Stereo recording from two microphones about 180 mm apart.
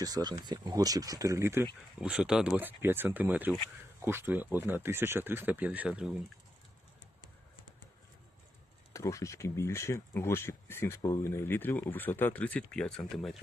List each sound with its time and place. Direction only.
0.0 s speech: 20° right (ahead or behind)
8.9 s speech: 15° left (ahead or behind); by 13.4 s centre (ahead or behind)